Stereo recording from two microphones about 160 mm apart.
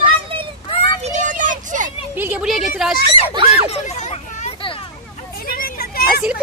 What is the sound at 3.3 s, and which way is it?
Speech, 30° right (ahead or behind).